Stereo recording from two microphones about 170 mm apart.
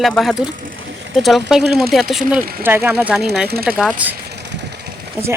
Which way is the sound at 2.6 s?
10° right (ahead or behind).